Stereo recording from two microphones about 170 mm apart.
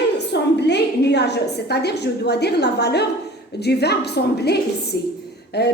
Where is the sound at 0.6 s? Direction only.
85° left.